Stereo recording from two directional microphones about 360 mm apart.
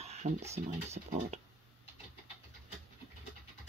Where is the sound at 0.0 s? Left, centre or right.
Centre.